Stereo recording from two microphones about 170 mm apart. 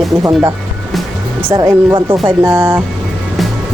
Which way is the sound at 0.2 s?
20° right (ahead or behind).